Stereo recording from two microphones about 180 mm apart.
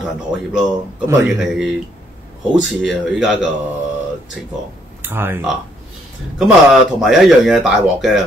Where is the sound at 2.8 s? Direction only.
5° right (ahead or behind).